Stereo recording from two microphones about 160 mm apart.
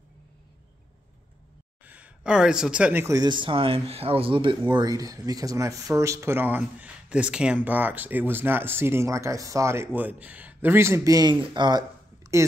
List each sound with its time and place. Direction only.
1.9 s speech: 10° right (ahead or behind)